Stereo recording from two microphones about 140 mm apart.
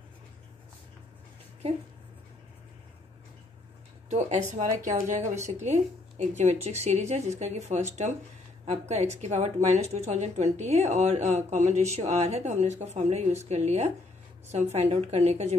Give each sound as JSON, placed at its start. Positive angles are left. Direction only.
{"t": 4.1, "sound": "a woman's voice", "side_deg": -55}